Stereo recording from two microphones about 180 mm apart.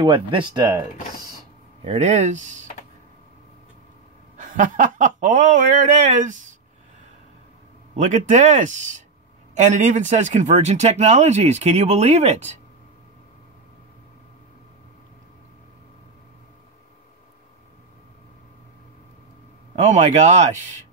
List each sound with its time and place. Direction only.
0.0 s speech: 25° right (ahead or behind)
1.9 s speech: 40° right (ahead or behind)
4.4 s speech: 45° right (ahead or behind)
8.0 s speech: 40° right (ahead or behind)
19.7 s speech: 40° right (ahead or behind)